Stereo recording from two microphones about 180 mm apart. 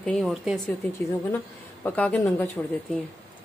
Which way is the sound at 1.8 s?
10° left (ahead or behind).